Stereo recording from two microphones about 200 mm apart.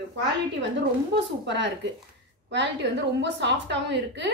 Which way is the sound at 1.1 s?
60° right (ahead or behind).